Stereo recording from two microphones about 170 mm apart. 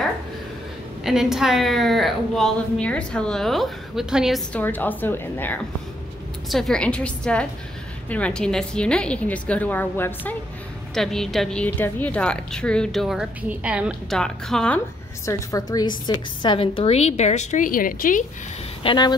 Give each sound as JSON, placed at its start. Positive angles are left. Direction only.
{"t": 1.0, "sound": "a woman's voice", "side_deg": 0}
{"t": 4.5, "sound": "a woman's voice", "side_deg": 10}
{"t": 14.1, "sound": "a woman's voice", "side_deg": 5}
{"t": 15.2, "sound": "a woman's voice", "side_deg": 20}
{"t": 18.8, "sound": "speech", "side_deg": 30}